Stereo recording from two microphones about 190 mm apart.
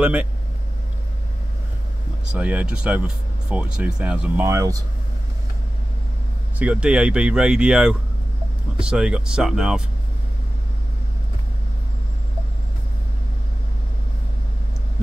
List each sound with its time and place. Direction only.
0.0 s speech: 5° right (ahead or behind)
2.3 s speech: 5° right (ahead or behind)
4.5 s speech: 15° right (ahead or behind)
6.6 s speech: 5° right (ahead or behind)